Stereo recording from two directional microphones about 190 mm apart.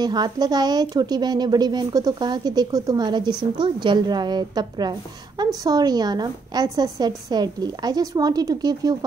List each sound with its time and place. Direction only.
0.0 s a woman's voice: 20° right (ahead or behind)